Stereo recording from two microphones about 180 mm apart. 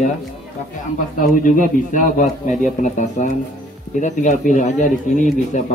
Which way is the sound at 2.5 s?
40° left (ahead or behind).